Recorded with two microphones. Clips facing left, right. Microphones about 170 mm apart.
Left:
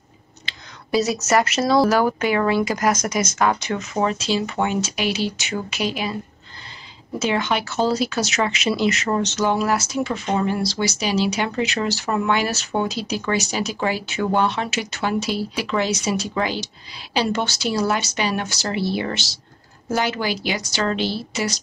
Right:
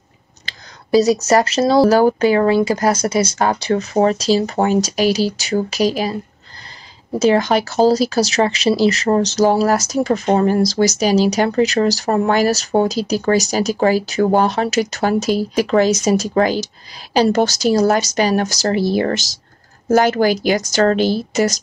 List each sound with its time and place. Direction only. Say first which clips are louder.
0.5 s speech: right 8 dB; 35° right (ahead or behind)
7.2 s a woman's voice: right 8 dB; 40° right (ahead or behind)